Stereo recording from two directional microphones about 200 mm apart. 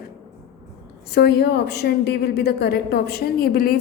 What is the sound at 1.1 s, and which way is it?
A woman's voice, 55° left (ahead or behind).